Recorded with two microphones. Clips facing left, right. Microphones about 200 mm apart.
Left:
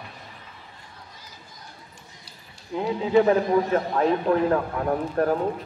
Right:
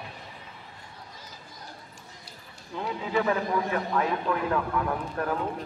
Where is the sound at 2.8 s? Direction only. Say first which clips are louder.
Left 8 dB; 30° left (ahead or behind).